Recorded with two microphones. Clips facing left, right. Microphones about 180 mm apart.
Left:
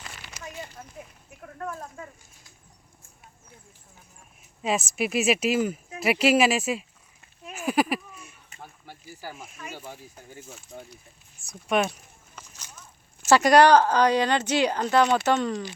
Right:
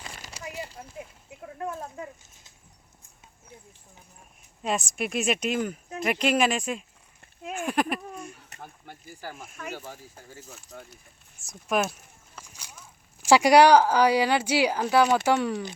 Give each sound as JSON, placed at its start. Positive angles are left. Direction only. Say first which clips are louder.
{"t": 0.2, "sound": "a sound", "louder": "right 2 dB", "side_deg": -35}
{"t": 1.4, "sound": "a woman's voice", "louder": "right 2 dB", "side_deg": -15}
{"t": 4.6, "sound": "speech", "louder": "left 2 dB", "side_deg": 0}
{"t": 8.5, "sound": "a sound", "louder": "right 1 dB", "side_deg": -70}
{"t": 9.2, "sound": "speech", "louder": "even", "side_deg": 0}
{"t": 9.7, "sound": "speech", "louder": "right 1 dB", "side_deg": 15}
{"t": 11.3, "sound": "speech", "louder": "left 2 dB", "side_deg": 0}
{"t": 12.4, "sound": "a sound", "louder": "even", "side_deg": -10}
{"t": 13.2, "sound": "a woman's voice", "louder": "even", "side_deg": -10}